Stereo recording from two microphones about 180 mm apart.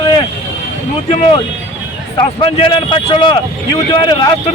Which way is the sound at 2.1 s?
30° left (ahead or behind).